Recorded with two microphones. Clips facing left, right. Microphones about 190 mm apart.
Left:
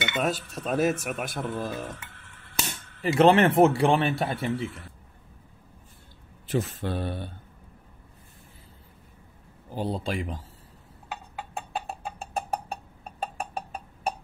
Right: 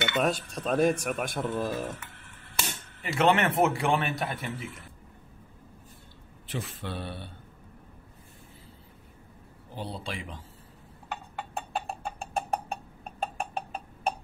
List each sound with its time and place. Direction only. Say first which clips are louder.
0.2 s speech: left 1 dB; 5° left (ahead or behind)
3.0 s a man's voice: left 6 dB; 35° left (ahead or behind)
6.4 s speech: left 8 dB; 45° left (ahead or behind)
9.8 s speech: left 7 dB; 45° left (ahead or behind)
11.5 s a sound: even; centre (ahead or behind)